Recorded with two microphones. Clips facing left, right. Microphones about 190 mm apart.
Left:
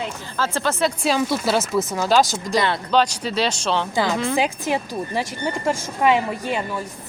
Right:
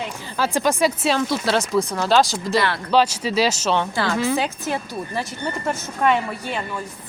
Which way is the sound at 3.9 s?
15° left (ahead or behind).